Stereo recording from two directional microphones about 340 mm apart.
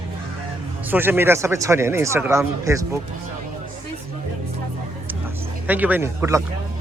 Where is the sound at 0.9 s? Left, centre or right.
Centre.